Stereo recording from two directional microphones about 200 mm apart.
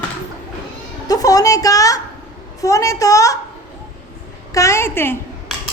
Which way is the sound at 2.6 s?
15° left (ahead or behind).